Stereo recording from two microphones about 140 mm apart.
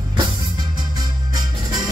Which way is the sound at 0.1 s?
30° right (ahead or behind).